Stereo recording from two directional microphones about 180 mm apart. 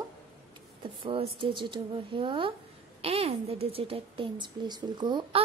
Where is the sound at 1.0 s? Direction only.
30° right (ahead or behind).